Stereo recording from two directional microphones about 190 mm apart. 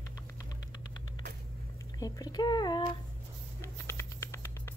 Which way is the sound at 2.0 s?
20° left (ahead or behind).